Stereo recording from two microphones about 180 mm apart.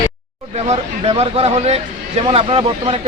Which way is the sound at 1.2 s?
35° right (ahead or behind).